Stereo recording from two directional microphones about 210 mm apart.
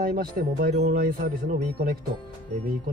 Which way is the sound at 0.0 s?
45° right (ahead or behind).